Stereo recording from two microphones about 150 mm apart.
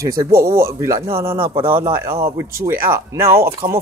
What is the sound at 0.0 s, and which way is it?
Speech, 20° right (ahead or behind).